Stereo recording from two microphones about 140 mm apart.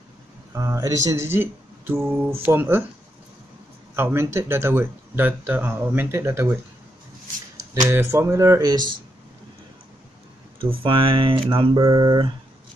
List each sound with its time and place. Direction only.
0.6 s speech: 20° right (ahead or behind)
3.9 s speech: 15° right (ahead or behind)
7.9 s speech: 20° right (ahead or behind)
10.6 s speech: 40° right (ahead or behind)